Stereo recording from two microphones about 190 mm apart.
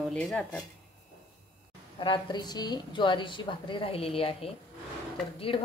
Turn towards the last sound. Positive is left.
turn(degrees=30)  # may be behind; listen again after turning